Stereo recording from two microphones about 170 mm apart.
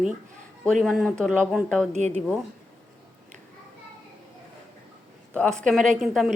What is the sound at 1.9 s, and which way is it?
Speech, 40° right (ahead or behind).